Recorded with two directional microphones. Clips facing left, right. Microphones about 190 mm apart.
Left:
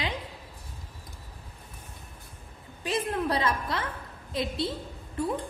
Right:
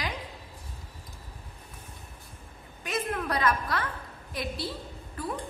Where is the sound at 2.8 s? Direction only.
30° left (ahead or behind).